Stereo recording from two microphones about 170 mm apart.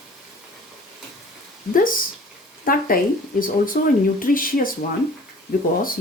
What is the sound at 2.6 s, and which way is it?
Speech, 60° left (ahead or behind).